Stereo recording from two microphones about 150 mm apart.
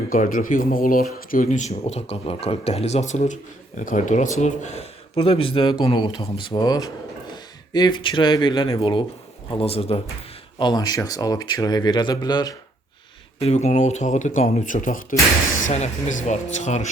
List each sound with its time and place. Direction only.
0.1 s speech: 70° left (ahead or behind)
1.3 s speech: 60° left (ahead or behind); by 10.0 s 40° left (ahead or behind)
10.6 s speech: 30° left (ahead or behind)
13.4 s speech: 45° left (ahead or behind)